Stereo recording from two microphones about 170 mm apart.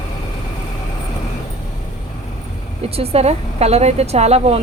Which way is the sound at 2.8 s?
35° right (ahead or behind).